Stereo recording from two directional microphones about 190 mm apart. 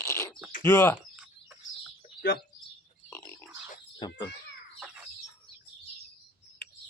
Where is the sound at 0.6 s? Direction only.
15° left (ahead or behind).